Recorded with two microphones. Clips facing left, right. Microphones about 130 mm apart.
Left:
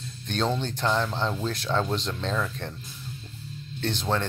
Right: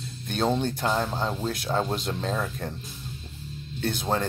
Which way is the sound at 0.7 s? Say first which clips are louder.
Even; 10° right (ahead or behind).